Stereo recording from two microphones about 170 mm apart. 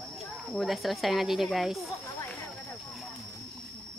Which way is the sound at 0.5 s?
Centre (ahead or behind).